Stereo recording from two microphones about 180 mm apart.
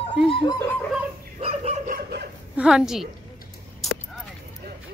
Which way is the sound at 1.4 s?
35° right (ahead or behind).